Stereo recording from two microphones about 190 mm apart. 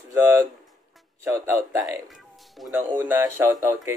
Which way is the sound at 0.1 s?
15° right (ahead or behind).